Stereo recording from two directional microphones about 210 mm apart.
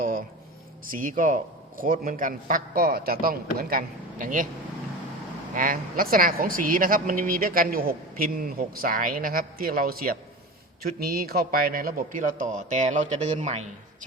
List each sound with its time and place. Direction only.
0.0 s a sound: 40° right (ahead or behind)
0.9 s a man's voice: 40° right (ahead or behind)
5.5 s a man's voice: 40° right (ahead or behind)